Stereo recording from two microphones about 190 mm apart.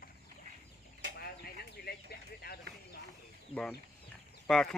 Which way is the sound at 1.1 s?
55° left (ahead or behind).